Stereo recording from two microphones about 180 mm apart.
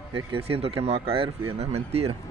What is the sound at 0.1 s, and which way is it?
Speech, 30° right (ahead or behind).